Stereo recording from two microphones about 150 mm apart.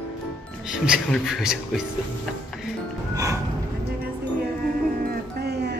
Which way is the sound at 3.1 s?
20° right (ahead or behind).